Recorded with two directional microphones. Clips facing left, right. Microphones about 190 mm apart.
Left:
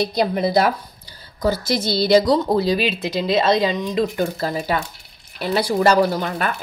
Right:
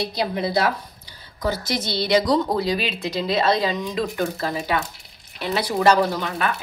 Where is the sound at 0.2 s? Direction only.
45° left (ahead or behind).